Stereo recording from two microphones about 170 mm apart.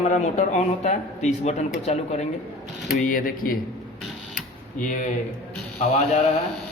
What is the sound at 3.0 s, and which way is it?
Speech, 55° left (ahead or behind).